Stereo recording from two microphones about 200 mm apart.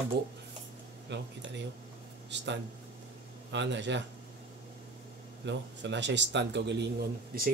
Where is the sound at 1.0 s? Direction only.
60° right (ahead or behind).